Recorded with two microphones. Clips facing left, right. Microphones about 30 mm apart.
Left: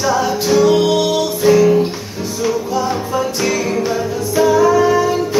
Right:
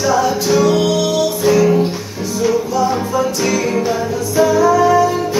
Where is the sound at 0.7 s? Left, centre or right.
Left.